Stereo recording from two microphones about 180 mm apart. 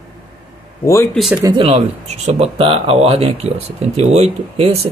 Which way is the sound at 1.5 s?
35° right (ahead or behind).